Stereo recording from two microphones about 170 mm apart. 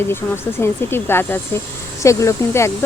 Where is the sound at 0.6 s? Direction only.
15° left (ahead or behind).